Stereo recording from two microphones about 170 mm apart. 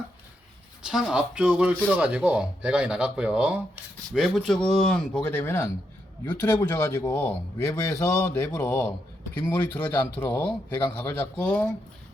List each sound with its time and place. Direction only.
0.9 s speech: 5° right (ahead or behind)